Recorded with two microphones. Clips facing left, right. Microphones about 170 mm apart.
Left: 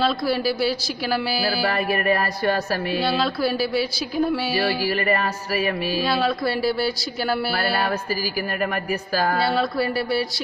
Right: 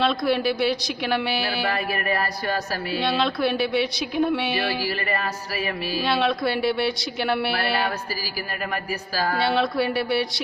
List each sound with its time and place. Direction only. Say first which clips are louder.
0.0 s speech: even; 5° left (ahead or behind)
3.0 s speech: right 1 dB; 5° left (ahead or behind)
4.6 s speech: left 4 dB; 40° left (ahead or behind)
6.0 s speech: right 1 dB; centre (ahead or behind)
9.4 s speech: even; centre (ahead or behind)